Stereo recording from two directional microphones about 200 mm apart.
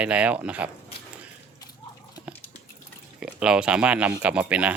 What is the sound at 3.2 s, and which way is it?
Speech, 5° right (ahead or behind).